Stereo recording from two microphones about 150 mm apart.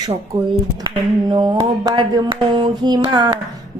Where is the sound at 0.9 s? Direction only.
30° right (ahead or behind).